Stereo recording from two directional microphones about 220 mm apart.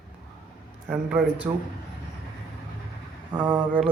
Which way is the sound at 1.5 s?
20° right (ahead or behind).